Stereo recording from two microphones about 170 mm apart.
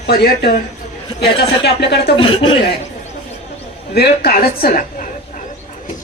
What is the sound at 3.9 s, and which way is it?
A woman's voice, 70° left (ahead or behind).